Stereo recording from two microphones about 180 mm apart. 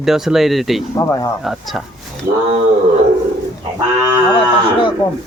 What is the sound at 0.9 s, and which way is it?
Speech, 15° left (ahead or behind).